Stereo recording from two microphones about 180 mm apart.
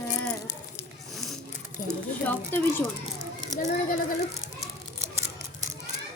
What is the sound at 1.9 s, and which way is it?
Child singing, 10° left (ahead or behind).